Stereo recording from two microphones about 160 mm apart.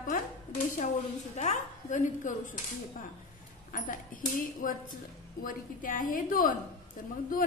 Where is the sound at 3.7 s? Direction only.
55° left (ahead or behind).